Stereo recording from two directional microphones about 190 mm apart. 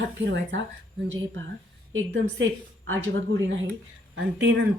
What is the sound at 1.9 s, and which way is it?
Speech, 70° right (ahead or behind).